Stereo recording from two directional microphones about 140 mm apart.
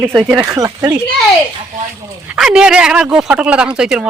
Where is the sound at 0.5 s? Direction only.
25° right (ahead or behind).